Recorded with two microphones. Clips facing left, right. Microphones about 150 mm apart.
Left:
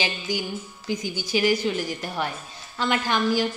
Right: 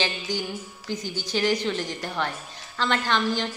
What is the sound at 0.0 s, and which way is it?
A woman's voice, 10° left (ahead or behind).